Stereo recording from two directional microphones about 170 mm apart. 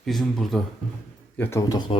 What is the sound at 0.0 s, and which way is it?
Speech, centre (ahead or behind).